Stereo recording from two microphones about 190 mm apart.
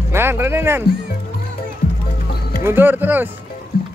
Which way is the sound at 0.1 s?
10° right (ahead or behind).